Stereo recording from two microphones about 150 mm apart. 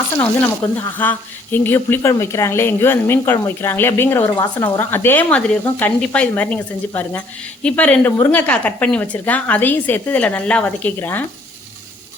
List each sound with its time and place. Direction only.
0.2 s a woman's voice: 15° left (ahead or behind)